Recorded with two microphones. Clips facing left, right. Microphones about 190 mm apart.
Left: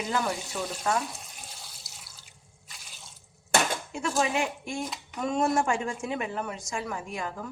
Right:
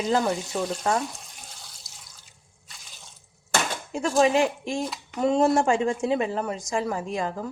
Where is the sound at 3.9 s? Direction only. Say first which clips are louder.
Right 10 dB; 35° right (ahead or behind).